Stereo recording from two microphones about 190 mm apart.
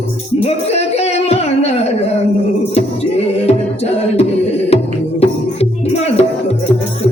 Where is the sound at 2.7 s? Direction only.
35° left (ahead or behind).